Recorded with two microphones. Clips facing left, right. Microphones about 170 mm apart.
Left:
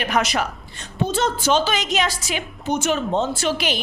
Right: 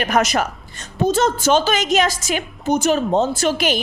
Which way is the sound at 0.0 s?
45° right (ahead or behind).